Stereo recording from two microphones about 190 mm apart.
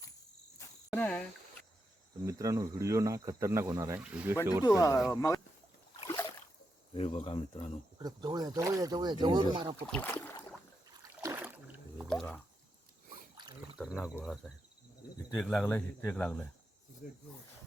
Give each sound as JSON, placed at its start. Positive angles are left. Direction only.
{"t": 0.9, "sound": "speech", "side_deg": 10}
{"t": 2.2, "sound": "speech", "side_deg": -15}
{"t": 4.6, "sound": "speech", "side_deg": 15}
{"t": 6.9, "sound": "speech", "side_deg": 35}
{"t": 7.9, "sound": "speech", "side_deg": -20}
{"t": 9.9, "sound": "speech", "side_deg": 10}
{"t": 10.8, "sound": "rowboat", "side_deg": -20}
{"t": 12.0, "sound": "speech", "side_deg": 5}
{"t": 13.7, "sound": "speech", "side_deg": -5}